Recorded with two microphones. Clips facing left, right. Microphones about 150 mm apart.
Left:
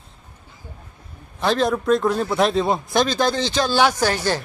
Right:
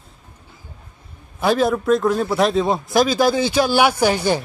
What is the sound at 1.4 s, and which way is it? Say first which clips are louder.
A man's voice: right 2 dB; 5° right (ahead or behind).